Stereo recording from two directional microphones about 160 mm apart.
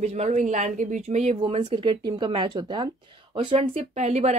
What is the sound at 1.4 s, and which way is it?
A woman's voice, 35° right (ahead or behind).